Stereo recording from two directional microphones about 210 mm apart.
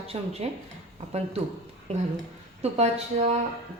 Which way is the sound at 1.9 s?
30° right (ahead or behind).